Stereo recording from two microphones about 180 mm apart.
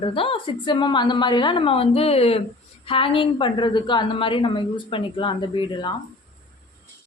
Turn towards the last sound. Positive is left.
turn(degrees=25)  # may be behind; listen again after turning